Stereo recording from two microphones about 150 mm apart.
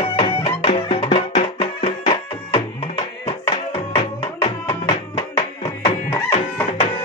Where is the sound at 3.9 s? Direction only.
30° left (ahead or behind).